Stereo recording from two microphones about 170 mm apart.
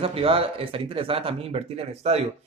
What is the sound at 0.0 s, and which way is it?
Speech, 35° right (ahead or behind).